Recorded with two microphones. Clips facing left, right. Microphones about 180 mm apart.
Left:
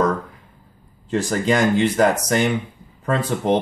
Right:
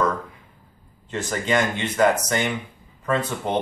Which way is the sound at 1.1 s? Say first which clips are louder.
Left 4 dB; 35° left (ahead or behind).